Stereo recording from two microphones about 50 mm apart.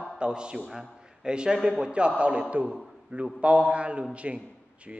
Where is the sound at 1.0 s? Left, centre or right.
Centre.